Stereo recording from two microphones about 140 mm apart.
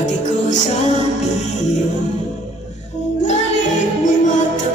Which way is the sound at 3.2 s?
60° left (ahead or behind).